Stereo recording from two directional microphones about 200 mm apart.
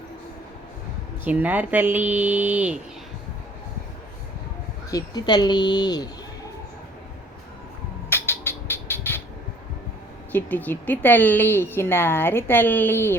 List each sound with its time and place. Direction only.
1.2 s speech: 10° right (ahead or behind)
4.9 s speech: 20° left (ahead or behind)
8.1 s music: 10° left (ahead or behind)
10.3 s a woman's voice: 10° left (ahead or behind)